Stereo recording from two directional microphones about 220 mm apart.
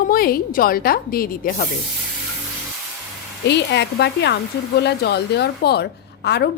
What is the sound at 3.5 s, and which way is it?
A woman's voice, 50° left (ahead or behind).